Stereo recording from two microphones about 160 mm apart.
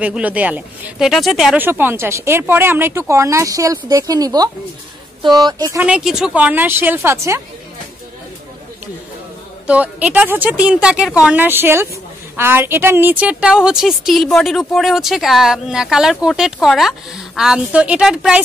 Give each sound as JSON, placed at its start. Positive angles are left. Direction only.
{"t": 0.0, "sound": "speech", "side_deg": -10}
{"t": 5.8, "sound": "speech", "side_deg": -5}
{"t": 9.7, "sound": "a woman's voice", "side_deg": -10}